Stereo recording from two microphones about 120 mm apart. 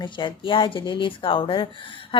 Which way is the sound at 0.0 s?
40° left (ahead or behind).